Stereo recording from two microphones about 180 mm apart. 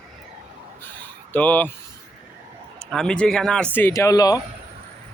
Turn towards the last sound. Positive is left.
turn(degrees=20)  # may be behind; listen again after turning